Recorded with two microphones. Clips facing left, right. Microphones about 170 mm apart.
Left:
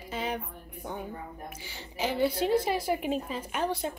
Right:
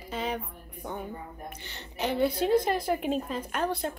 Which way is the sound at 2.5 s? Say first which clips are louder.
Right 2 dB; 5° left (ahead or behind).